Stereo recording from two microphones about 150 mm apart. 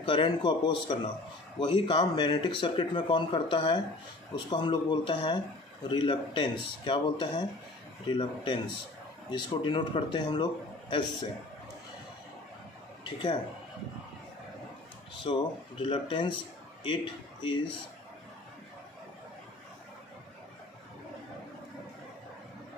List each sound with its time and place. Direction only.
0.0 s speech: 35° left (ahead or behind)
13.0 s speech: 30° left (ahead or behind)
15.3 s a man's voice: 35° left (ahead or behind)